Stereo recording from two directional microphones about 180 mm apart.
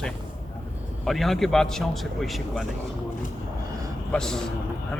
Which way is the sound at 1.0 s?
Centre (ahead or behind).